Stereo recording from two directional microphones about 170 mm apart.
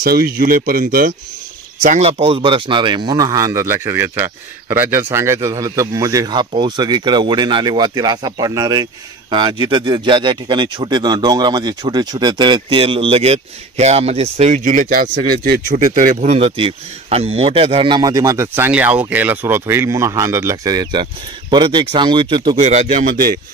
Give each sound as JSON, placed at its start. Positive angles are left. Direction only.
{"t": 0.0, "sound": "speech", "side_deg": -60}
{"t": 1.8, "sound": "speech", "side_deg": -40}
{"t": 22.6, "sound": "speech", "side_deg": -40}